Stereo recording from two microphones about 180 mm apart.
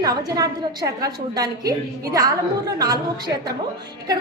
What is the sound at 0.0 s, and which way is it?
A woman's voice, 20° right (ahead or behind).